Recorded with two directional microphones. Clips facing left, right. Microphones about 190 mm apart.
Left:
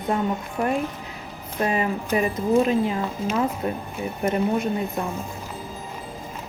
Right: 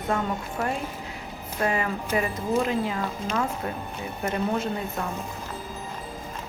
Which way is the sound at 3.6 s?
20° left (ahead or behind).